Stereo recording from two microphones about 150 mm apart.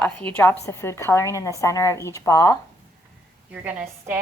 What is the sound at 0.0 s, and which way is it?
A woman's voice, 10° left (ahead or behind).